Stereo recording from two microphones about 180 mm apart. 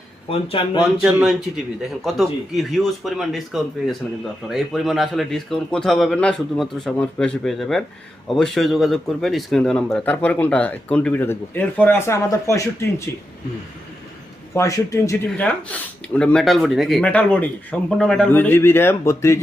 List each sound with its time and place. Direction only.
0.3 s speech: 30° left (ahead or behind)
1.0 s a man's voice: centre (ahead or behind); by 13.1 s 15° left (ahead or behind)
14.5 s speech: 15° left (ahead or behind)